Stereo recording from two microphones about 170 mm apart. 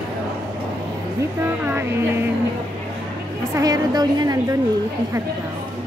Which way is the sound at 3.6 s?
20° right (ahead or behind).